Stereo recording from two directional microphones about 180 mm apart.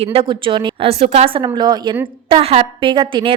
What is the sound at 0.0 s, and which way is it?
A woman's voice, 30° right (ahead or behind).